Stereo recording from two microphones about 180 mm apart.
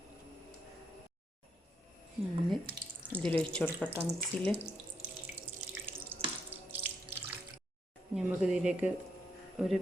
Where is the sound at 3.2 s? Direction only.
10° left (ahead or behind).